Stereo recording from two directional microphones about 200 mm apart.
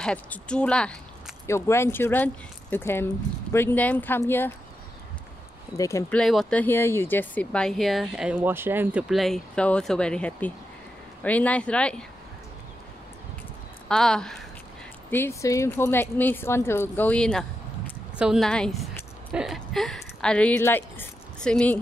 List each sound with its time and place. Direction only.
0.0 s speech: 5° left (ahead or behind)
5.8 s speech: 15° left (ahead or behind)
6.1 s speech: 5° left (ahead or behind)
13.8 s speech: 5° left (ahead or behind)